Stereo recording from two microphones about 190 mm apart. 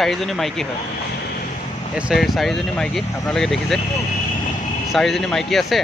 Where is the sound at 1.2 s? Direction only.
55° left (ahead or behind).